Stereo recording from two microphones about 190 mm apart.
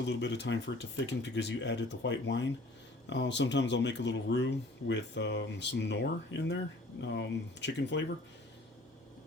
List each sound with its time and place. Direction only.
0.0 s speech: 65° left (ahead or behind)